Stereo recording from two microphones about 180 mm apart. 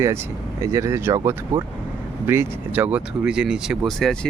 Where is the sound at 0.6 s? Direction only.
15° right (ahead or behind).